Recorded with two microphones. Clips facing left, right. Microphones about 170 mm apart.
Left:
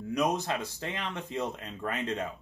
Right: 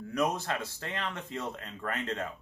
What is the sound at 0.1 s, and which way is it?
Speech, 15° left (ahead or behind).